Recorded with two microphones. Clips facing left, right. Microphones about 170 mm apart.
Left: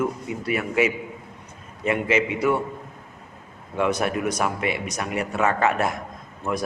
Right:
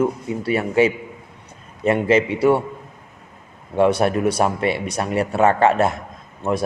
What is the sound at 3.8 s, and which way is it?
A man's voice, 30° right (ahead or behind).